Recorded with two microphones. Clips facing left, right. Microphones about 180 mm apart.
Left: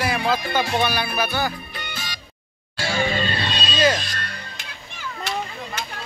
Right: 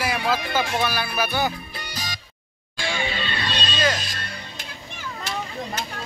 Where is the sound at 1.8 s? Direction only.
40° right (ahead or behind).